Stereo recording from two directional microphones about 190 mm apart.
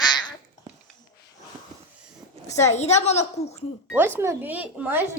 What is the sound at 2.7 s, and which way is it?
Speech, 35° left (ahead or behind).